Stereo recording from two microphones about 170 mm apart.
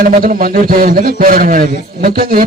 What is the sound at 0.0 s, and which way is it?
A man's voice, 55° right (ahead or behind).